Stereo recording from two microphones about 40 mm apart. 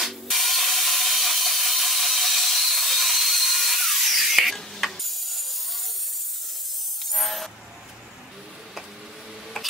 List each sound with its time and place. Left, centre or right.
0.0 s wood: centre
4.6 s ratchet: centre
7.1 s music: centre